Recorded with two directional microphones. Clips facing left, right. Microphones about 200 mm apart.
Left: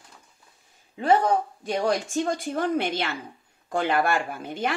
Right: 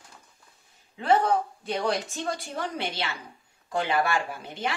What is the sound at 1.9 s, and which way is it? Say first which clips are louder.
Speech: left 5 dB; 45° left (ahead or behind).